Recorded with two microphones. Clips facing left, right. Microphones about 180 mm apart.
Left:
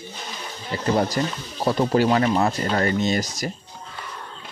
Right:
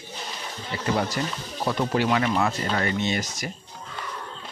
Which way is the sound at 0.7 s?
40° left (ahead or behind).